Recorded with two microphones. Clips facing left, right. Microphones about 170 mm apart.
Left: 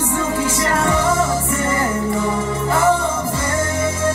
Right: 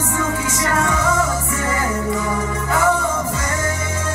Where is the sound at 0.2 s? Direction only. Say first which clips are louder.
Left 1 dB; 30° left (ahead or behind).